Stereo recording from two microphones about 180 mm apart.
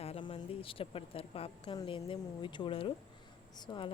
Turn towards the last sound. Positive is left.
turn(degrees=25)  # may be behind; listen again after turning